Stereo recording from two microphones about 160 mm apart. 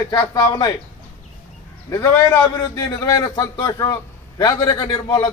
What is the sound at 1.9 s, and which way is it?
A man's voice, 15° left (ahead or behind).